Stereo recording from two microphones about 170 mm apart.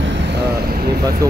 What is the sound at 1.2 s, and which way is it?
Speech, 20° right (ahead or behind).